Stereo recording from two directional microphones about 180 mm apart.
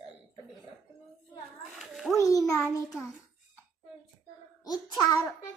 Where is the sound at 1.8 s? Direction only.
Centre (ahead or behind).